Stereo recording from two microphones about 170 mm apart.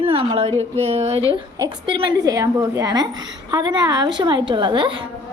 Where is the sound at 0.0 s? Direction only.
30° right (ahead or behind).